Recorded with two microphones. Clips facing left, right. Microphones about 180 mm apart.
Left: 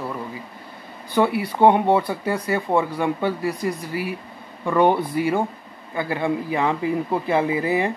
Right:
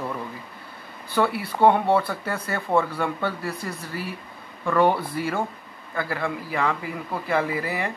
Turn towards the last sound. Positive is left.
turn(degrees=20)  # may be behind; listen again after turning